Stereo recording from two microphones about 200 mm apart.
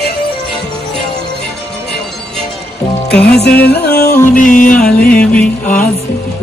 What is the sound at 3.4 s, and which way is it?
Music, 55° left (ahead or behind).